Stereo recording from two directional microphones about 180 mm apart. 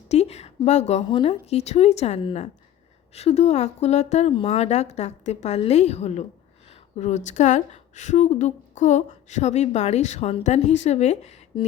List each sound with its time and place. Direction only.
0.1 s a woman's voice: 35° left (ahead or behind)